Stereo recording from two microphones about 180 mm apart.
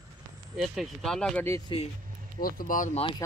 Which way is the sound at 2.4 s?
50° left (ahead or behind).